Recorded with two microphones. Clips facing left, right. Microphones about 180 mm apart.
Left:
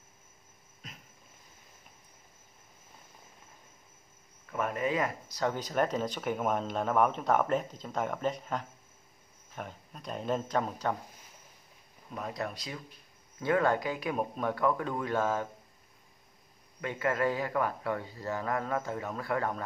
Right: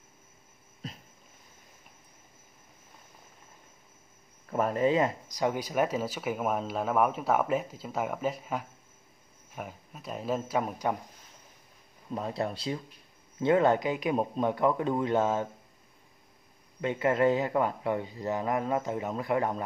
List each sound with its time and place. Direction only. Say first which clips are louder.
0.8 s a sound: right 9 dB; 35° right (ahead or behind)
4.5 s speech: right 5 dB; 35° right (ahead or behind)
5.3 s speech: right 2 dB; 15° right (ahead or behind)
12.1 s speech: right 5 dB; 30° right (ahead or behind)
16.8 s speech: right 5 dB; 25° right (ahead or behind)